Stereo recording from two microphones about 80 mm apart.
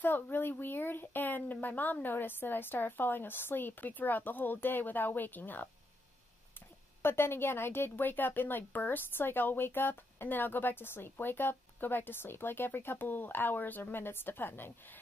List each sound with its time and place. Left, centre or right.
0.0 s a woman's voice: left
7.0 s a woman's voice: left